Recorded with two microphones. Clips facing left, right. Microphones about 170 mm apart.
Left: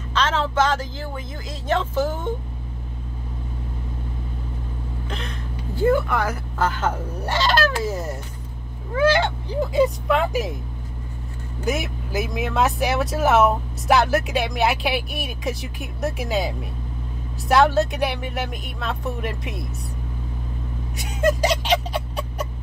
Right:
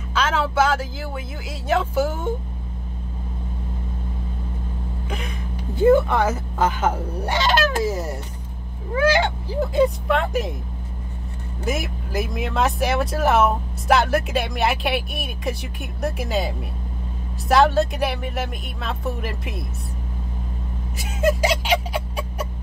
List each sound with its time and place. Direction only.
0.1 s speech: 10° right (ahead or behind)
5.8 s speech: 20° right (ahead or behind)
7.8 s music: 10° right (ahead or behind)
9.1 s speech: 10° right (ahead or behind)
9.6 s speech: centre (ahead or behind)
11.6 s speech: centre (ahead or behind)
20.9 s a sound: 5° right (ahead or behind)